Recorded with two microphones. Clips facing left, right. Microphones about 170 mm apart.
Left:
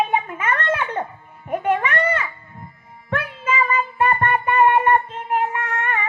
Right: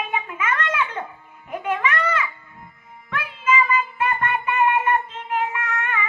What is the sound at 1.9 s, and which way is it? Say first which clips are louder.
Children playing: left 3 dB; 55° left (ahead or behind).